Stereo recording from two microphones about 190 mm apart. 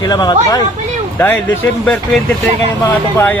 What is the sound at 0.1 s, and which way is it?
Speech, 20° left (ahead or behind).